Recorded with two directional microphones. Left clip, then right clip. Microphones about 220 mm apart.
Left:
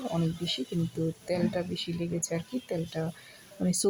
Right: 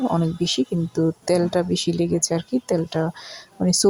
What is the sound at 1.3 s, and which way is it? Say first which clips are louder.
Speech: right 10 dB; 25° right (ahead or behind).